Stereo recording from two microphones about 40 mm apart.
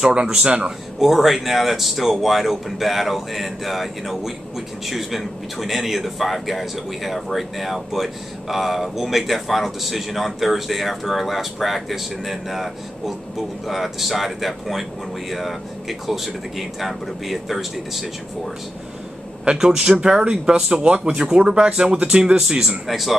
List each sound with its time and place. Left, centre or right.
0.1 s speech: right
0.7 s speech: centre
19.4 s speech: right
20.6 s speech: right
22.8 s speech: centre